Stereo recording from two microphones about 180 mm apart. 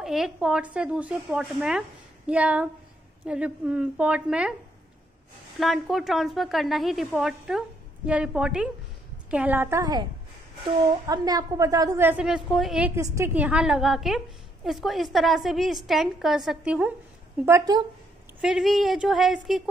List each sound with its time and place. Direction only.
0.0 s a woman's voice: centre (ahead or behind)
5.6 s a woman's voice: centre (ahead or behind)
17.5 s speech: 20° right (ahead or behind)
18.4 s a woman's voice: centre (ahead or behind)